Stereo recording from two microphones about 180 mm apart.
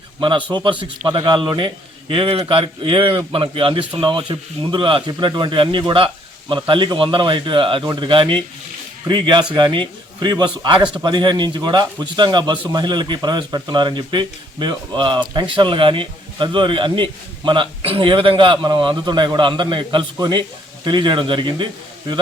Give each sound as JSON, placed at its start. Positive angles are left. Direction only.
{"t": 0.2, "sound": "a man's voice", "side_deg": -25}